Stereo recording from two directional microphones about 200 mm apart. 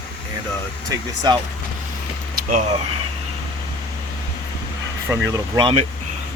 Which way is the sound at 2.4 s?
40° right (ahead or behind).